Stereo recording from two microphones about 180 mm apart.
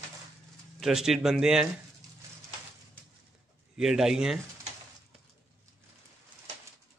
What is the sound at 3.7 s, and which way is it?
Speech, 5° right (ahead or behind).